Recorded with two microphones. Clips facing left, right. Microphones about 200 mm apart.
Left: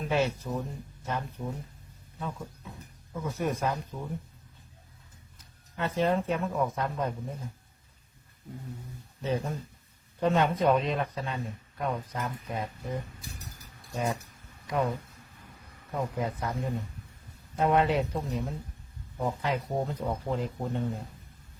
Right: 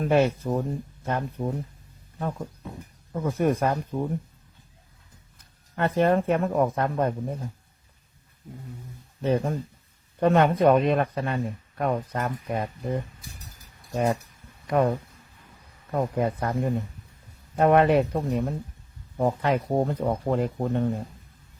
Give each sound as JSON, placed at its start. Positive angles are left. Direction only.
{"t": 0.0, "sound": "speech", "side_deg": -55}
{"t": 5.7, "sound": "speech", "side_deg": -60}
{"t": 9.2, "sound": "speech", "side_deg": -60}